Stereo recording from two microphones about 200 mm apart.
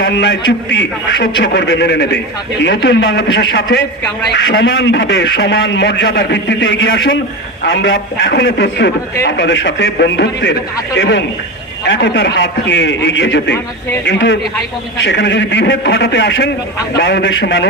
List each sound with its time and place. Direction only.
0.0 s a man's voice: 60° left (ahead or behind)